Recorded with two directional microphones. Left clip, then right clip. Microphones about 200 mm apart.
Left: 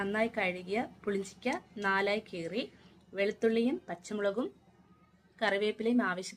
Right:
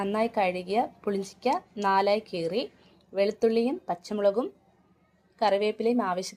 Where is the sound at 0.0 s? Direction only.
15° right (ahead or behind).